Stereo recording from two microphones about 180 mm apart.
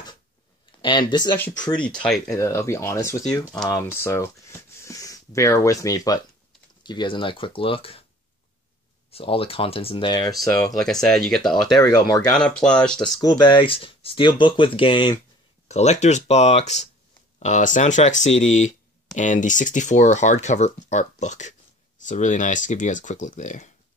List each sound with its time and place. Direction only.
2.0 s speech: centre (ahead or behind)
2.3 s speech: 15° left (ahead or behind); by 8.0 s 30° left (ahead or behind)
9.1 s speech: 30° left (ahead or behind)
10.6 s speech: 5° left (ahead or behind)
11.9 s speech: 20° left (ahead or behind)
12.4 s speech: 5° left (ahead or behind)
13.0 s speech: 20° left (ahead or behind)
15.7 s speech: 40° left (ahead or behind)